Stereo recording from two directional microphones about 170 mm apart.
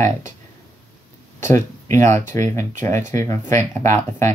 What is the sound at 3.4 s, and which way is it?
Speech, 45° right (ahead or behind).